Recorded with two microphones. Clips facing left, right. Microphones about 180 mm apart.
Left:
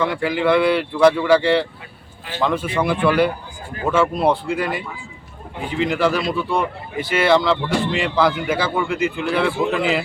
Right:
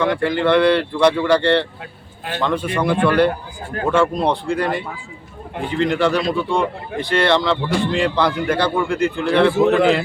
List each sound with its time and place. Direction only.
0.0 s speech: 5° left (ahead or behind)